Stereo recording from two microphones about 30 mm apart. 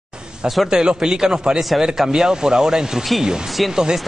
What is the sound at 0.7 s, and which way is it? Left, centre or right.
Speech, right.